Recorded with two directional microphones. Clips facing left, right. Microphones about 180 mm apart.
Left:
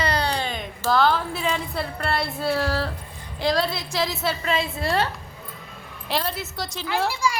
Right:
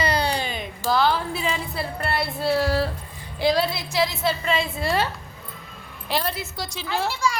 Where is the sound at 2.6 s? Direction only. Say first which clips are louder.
Right 3 dB; 10° right (ahead or behind).